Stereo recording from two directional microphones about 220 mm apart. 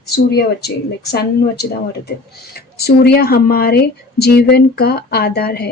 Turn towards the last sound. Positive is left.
turn(degrees=45)  # may be behind; listen again after turning